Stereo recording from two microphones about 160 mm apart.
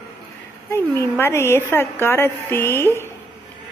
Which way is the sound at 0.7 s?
15° left (ahead or behind).